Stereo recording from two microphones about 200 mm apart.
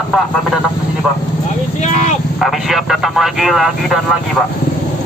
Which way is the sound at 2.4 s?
Centre (ahead or behind).